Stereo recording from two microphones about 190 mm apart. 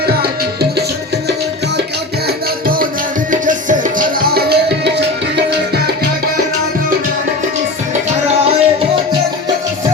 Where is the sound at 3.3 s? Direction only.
45° right (ahead or behind); by 5.8 s 60° right (ahead or behind).